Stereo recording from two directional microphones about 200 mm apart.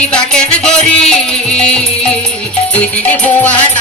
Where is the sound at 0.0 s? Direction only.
5° left (ahead or behind).